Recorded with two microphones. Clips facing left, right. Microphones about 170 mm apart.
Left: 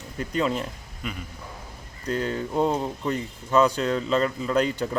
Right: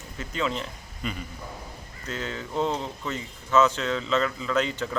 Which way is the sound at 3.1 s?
35° left (ahead or behind).